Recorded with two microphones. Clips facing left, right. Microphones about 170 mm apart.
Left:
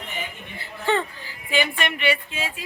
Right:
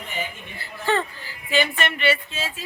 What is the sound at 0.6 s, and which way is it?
A woman's voice, 20° left (ahead or behind).